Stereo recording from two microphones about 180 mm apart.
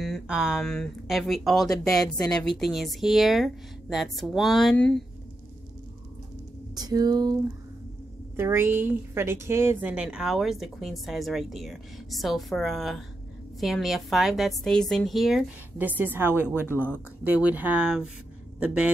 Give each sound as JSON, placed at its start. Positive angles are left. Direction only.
{"t": 0.0, "sound": "speech", "side_deg": 0}
{"t": 6.7, "sound": "a sound", "side_deg": -20}
{"t": 8.4, "sound": "speech", "side_deg": -15}